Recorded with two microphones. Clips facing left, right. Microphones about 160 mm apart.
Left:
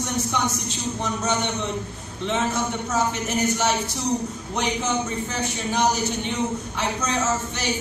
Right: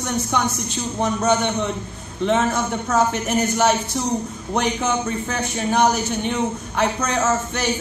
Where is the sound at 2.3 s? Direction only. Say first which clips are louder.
Right 4 dB; 55° right (ahead or behind).